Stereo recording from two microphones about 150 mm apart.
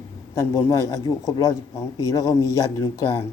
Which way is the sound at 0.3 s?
20° left (ahead or behind).